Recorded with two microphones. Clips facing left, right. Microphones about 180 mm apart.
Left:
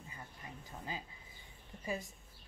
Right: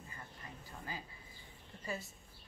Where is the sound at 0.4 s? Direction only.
20° left (ahead or behind).